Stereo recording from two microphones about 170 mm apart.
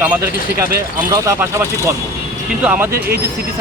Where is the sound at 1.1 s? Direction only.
20° right (ahead or behind).